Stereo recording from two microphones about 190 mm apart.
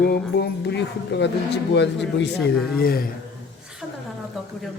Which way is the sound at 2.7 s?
50° left (ahead or behind).